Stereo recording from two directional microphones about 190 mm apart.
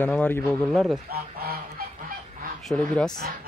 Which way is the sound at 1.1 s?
55° right (ahead or behind).